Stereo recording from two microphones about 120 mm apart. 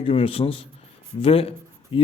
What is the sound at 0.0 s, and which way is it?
A man's voice, 50° left (ahead or behind).